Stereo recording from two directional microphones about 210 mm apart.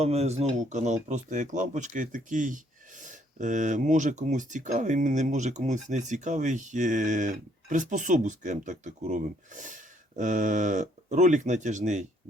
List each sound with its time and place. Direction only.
0.0 s speech: 30° right (ahead or behind)